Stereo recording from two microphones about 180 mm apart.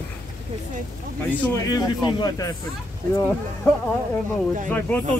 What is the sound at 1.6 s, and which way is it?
Speech, 20° left (ahead or behind).